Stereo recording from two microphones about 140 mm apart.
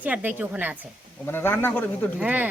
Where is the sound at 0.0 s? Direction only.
10° right (ahead or behind).